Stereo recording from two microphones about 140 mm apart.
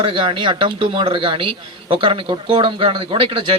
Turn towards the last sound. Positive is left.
turn(degrees=-40)  # may be behind; listen again after turning